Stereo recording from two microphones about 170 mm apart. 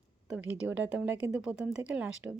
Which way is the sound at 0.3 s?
5° right (ahead or behind).